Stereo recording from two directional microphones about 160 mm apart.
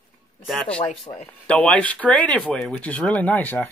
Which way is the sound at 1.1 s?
10° left (ahead or behind).